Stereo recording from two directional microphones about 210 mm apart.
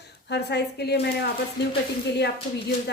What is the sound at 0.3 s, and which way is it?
A woman's voice, 55° left (ahead or behind).